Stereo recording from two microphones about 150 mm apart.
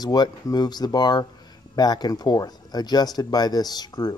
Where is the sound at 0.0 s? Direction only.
25° left (ahead or behind).